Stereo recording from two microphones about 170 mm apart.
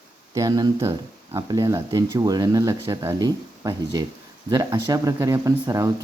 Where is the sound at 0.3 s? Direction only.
20° right (ahead or behind).